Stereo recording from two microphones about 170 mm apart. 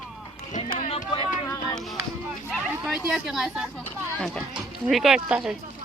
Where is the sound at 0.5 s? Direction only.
40° left (ahead or behind).